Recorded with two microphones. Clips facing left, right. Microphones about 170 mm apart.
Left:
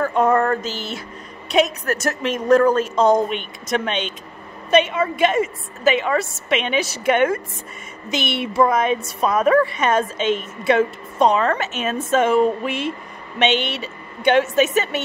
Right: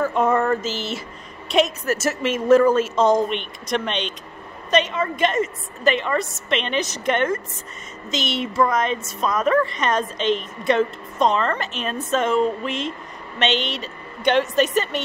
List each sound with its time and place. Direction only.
0.0 s a sound: 5° right (ahead or behind)
1.5 s a woman's voice: centre (ahead or behind)
8.1 s speech: 60° left (ahead or behind)
8.5 s a woman's voice: 10° left (ahead or behind)